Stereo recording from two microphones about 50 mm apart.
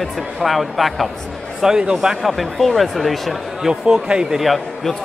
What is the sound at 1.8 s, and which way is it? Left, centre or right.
Speech, centre.